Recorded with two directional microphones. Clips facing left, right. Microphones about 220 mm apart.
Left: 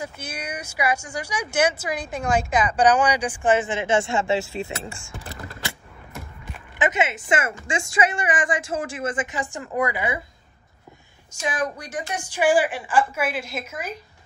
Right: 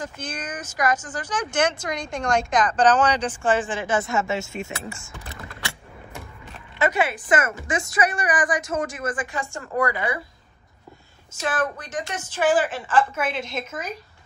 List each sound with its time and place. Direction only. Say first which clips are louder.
0.0 s speech: right 1 dB; 10° left (ahead or behind); by 5.1 s 30° left (ahead or behind)
6.8 s a woman's voice: right 1 dB; 20° left (ahead or behind)
11.3 s speech: right 1 dB; 15° left (ahead or behind)